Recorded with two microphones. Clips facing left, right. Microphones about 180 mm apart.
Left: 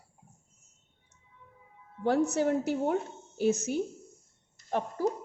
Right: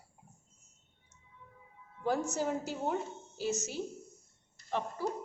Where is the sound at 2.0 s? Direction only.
65° left (ahead or behind).